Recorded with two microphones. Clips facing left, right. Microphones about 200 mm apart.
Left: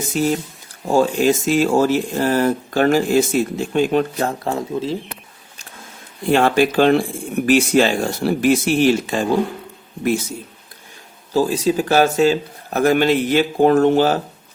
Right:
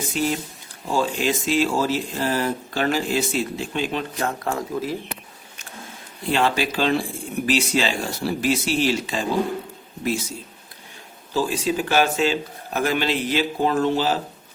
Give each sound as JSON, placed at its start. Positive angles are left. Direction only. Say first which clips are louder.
{"t": 0.1, "sound": "speech", "louder": "left 6 dB", "side_deg": 45}
{"t": 4.2, "sound": "speech", "louder": "left 4 dB", "side_deg": 25}
{"t": 6.2, "sound": "speech", "louder": "left 7 dB", "side_deg": 50}
{"t": 11.3, "sound": "speech", "louder": "left 6 dB", "side_deg": 40}